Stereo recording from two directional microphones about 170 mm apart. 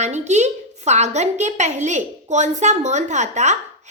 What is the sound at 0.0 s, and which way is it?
A woman's voice, 40° right (ahead or behind).